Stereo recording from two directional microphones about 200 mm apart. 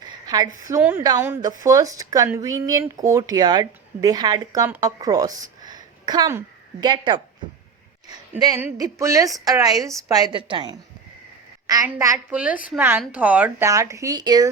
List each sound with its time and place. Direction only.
0.0 s a sound: 20° right (ahead or behind)
0.8 s speech: 10° right (ahead or behind)
8.3 s a woman's voice: 15° right (ahead or behind)